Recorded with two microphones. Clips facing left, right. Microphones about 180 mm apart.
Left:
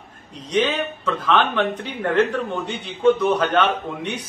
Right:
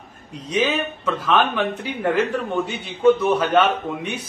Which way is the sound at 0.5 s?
5° right (ahead or behind).